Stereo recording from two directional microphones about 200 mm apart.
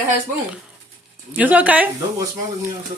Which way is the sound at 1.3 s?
10° right (ahead or behind).